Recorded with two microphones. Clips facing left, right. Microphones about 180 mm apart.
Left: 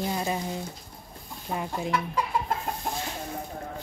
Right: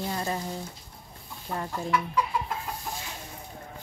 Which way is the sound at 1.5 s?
10° left (ahead or behind).